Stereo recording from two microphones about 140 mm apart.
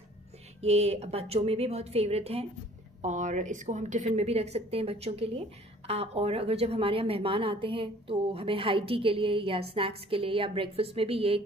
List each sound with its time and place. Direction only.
0.6 s a woman's voice: 50° right (ahead or behind)
3.0 s a woman's voice: 65° right (ahead or behind); by 11.4 s 40° right (ahead or behind)